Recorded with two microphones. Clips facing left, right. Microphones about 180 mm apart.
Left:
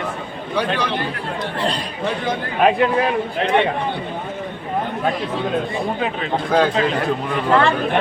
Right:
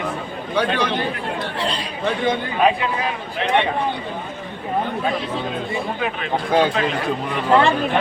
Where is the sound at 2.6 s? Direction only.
50° left (ahead or behind).